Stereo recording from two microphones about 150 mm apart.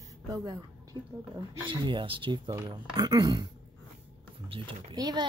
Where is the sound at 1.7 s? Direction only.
35° right (ahead or behind).